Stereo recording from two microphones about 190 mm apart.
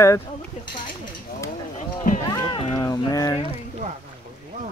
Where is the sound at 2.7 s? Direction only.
20° left (ahead or behind).